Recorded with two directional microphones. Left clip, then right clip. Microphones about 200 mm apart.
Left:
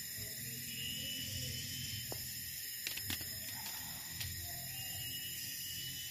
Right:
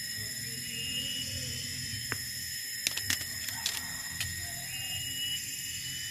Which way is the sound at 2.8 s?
Centre (ahead or behind).